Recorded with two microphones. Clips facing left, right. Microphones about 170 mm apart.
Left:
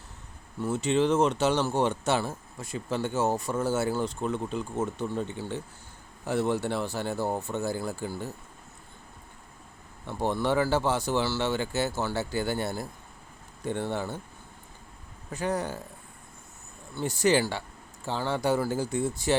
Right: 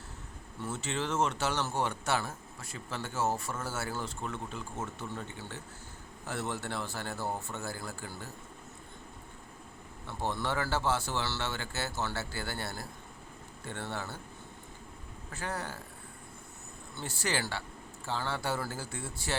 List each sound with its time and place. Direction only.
0.6 s speech: 15° left (ahead or behind)
10.1 s speech: 15° left (ahead or behind)
15.3 s speech: 15° left (ahead or behind)
17.0 s speech: 15° left (ahead or behind)